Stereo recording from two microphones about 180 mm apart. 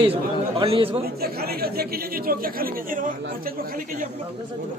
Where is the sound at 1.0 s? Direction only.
60° right (ahead or behind).